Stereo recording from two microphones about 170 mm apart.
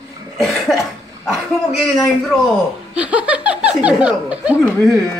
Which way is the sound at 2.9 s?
5° right (ahead or behind).